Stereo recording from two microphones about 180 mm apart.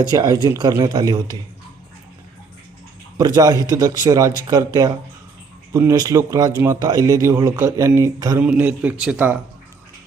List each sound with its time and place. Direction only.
0.1 s speech: 20° right (ahead or behind)
3.2 s speech: 20° right (ahead or behind)